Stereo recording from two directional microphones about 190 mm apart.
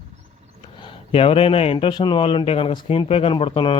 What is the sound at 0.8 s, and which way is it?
Speech, 30° left (ahead or behind).